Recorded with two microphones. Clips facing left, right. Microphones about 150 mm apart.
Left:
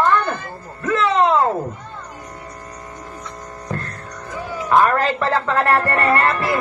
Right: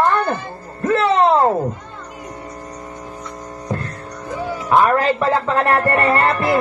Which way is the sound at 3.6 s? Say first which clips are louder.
Right 3 dB; 15° right (ahead or behind).